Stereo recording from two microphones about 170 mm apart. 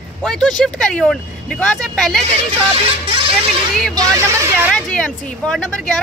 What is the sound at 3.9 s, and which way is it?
Speech, 15° right (ahead or behind).